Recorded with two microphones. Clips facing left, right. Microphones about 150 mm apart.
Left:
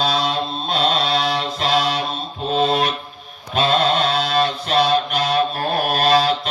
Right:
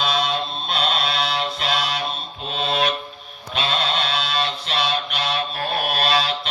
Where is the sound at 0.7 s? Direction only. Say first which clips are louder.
Left 5 dB; 40° left (ahead or behind).